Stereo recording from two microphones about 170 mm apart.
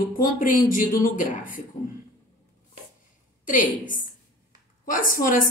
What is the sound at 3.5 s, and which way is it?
A woman's voice, 50° left (ahead or behind).